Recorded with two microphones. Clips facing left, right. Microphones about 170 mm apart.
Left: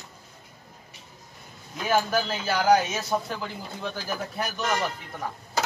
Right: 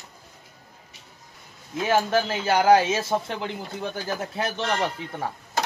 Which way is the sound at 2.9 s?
30° right (ahead or behind).